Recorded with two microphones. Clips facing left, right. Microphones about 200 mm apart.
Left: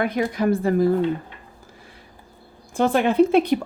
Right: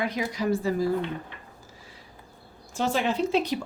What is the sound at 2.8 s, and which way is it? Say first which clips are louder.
Speech: left 8 dB; 55° left (ahead or behind).